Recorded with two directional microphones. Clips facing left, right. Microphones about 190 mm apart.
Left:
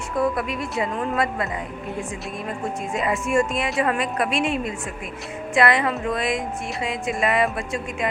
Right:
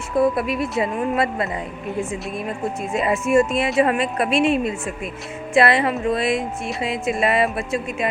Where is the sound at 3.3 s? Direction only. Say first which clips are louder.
Right 6 dB; 25° right (ahead or behind).